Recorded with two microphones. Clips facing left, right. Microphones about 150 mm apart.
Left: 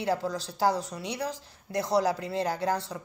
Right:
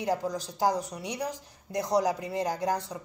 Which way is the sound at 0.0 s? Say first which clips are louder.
Even; 15° right (ahead or behind).